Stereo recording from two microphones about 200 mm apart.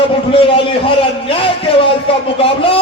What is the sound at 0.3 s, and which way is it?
A man's voice, 25° left (ahead or behind).